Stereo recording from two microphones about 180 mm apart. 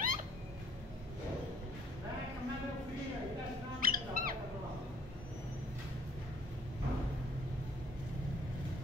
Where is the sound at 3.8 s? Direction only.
50° right (ahead or behind).